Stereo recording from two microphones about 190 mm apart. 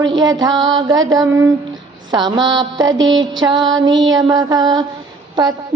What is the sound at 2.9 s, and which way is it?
Music, 80° right.